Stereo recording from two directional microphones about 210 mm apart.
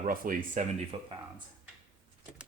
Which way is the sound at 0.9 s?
25° right (ahead or behind).